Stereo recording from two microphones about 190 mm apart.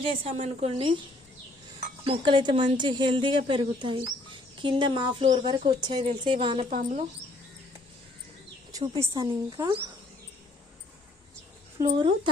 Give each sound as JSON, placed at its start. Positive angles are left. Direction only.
{"t": 0.3, "sound": "a woman's voice", "side_deg": -35}
{"t": 2.0, "sound": "speech", "side_deg": -25}
{"t": 6.7, "sound": "a woman's voice", "side_deg": -40}
{"t": 8.7, "sound": "speech", "side_deg": -20}
{"t": 11.8, "sound": "speech", "side_deg": -25}